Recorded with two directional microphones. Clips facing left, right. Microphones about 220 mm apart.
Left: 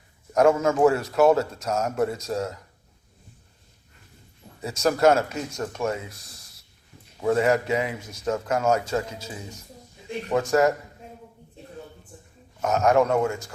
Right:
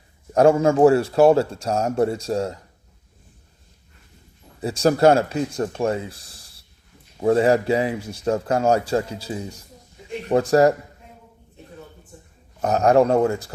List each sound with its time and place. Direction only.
0.3 s a man's voice: 30° right (ahead or behind)
4.6 s a man's voice: 30° right (ahead or behind)
12.6 s a man's voice: 35° right (ahead or behind)